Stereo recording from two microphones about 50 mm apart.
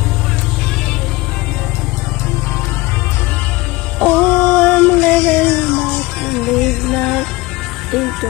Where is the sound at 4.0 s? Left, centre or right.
Left.